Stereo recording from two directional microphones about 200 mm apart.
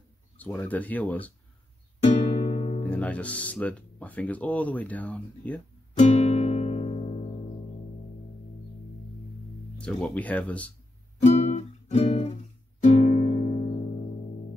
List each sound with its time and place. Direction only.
0.4 s speech: 10° left (ahead or behind)
2.3 s music: 35° left (ahead or behind)
2.8 s speech: 5° left (ahead or behind)
5.9 s music: 35° left (ahead or behind)
9.8 s speech: 5° left (ahead or behind)
11.2 s music: 35° left (ahead or behind)